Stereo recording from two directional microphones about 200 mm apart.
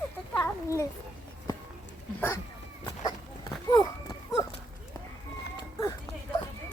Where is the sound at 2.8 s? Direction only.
20° left (ahead or behind).